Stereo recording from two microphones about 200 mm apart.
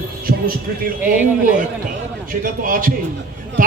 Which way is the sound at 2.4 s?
45° right (ahead or behind).